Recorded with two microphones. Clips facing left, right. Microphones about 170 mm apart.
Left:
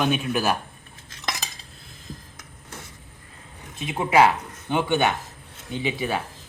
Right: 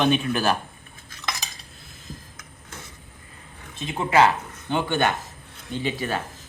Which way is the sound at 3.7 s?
10° left (ahead or behind).